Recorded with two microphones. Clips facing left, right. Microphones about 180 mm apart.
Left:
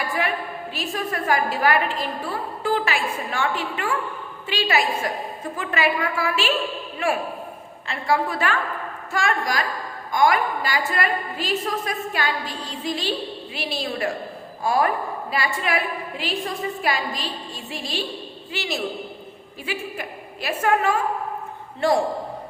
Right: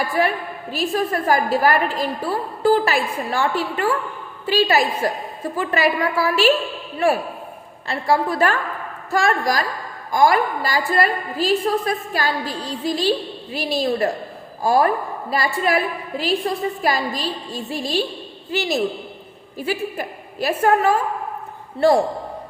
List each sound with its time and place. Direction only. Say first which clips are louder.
0.2 s a woman's voice: right 5 dB; 40° right (ahead or behind)
7.9 s a woman's voice: right 3 dB; 35° right (ahead or behind)